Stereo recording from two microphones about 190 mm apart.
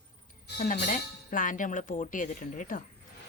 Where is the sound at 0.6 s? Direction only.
40° left (ahead or behind).